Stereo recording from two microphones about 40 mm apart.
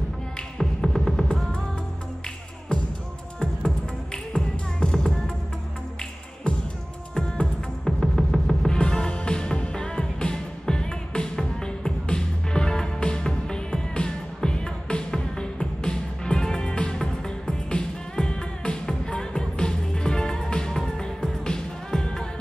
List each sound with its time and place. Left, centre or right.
0.6 s music: centre
2.7 s music: left
4.9 s music: centre
6.5 s music: left
7.8 s music: centre
8.6 s music: left